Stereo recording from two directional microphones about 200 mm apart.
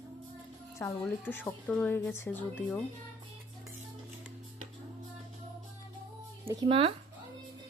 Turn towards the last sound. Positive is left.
turn(degrees=-30)  # may be behind; listen again after turning